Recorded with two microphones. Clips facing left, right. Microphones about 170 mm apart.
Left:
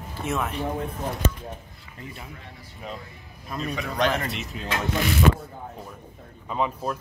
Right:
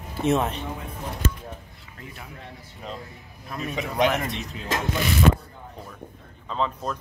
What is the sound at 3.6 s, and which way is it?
Speech, 20° right (ahead or behind).